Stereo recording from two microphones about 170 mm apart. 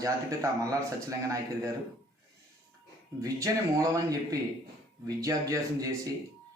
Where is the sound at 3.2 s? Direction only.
20° right (ahead or behind).